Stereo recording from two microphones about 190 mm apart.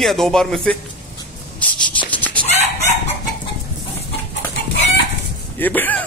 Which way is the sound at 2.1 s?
10° left (ahead or behind).